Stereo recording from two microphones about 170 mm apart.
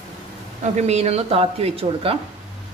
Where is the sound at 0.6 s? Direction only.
40° right (ahead or behind).